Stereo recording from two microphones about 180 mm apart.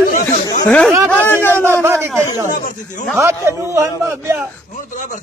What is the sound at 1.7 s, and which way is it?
Speech, 15° right (ahead or behind).